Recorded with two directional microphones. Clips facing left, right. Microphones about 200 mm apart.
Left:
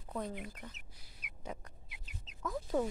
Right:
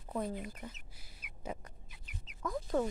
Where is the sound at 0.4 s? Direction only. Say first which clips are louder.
Right 3 dB; 10° right (ahead or behind).